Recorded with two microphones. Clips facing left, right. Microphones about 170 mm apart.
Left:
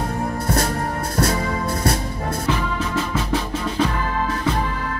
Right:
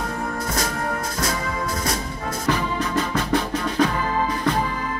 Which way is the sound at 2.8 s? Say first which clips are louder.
Even; 5° left (ahead or behind).